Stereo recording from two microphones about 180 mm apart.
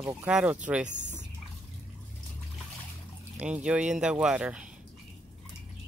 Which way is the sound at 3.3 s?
5° right (ahead or behind).